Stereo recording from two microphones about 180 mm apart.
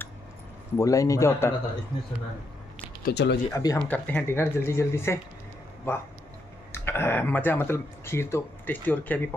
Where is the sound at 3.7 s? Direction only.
10° left (ahead or behind).